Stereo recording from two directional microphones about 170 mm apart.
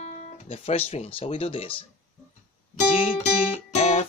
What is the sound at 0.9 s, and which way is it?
Speech, 35° left (ahead or behind).